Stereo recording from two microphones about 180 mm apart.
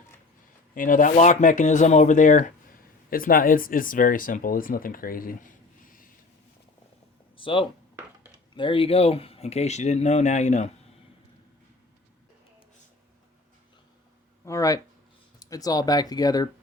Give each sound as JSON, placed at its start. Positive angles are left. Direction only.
{"t": 0.7, "sound": "speech", "side_deg": 50}
{"t": 7.3, "sound": "a sound", "side_deg": 30}
{"t": 8.5, "sound": "speech", "side_deg": 30}
{"t": 14.4, "sound": "speech", "side_deg": 20}